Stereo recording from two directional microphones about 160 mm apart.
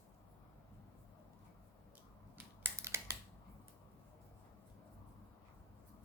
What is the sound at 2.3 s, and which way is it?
Scissors, 15° right (ahead or behind).